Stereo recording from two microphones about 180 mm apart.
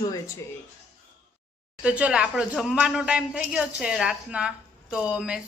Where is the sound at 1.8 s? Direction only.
5° right (ahead or behind).